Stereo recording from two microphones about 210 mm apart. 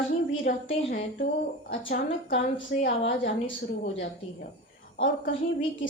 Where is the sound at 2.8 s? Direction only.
60° left (ahead or behind).